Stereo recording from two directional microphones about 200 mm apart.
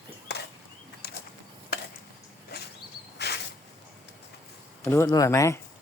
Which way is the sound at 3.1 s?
55° left (ahead or behind).